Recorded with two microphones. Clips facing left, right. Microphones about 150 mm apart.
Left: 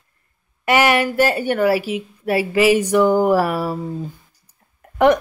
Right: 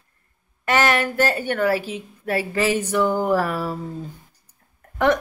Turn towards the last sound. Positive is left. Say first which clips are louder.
# left 5 dB
turn(degrees=15)  # may be behind; listen again after turning